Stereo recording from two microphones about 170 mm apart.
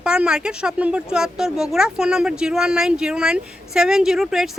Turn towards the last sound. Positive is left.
turn(degrees=0)  # may be behind; listen again after turning